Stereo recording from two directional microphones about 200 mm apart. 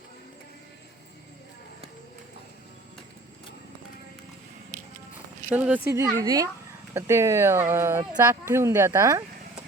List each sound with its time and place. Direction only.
5.5 s speech: 5° right (ahead or behind)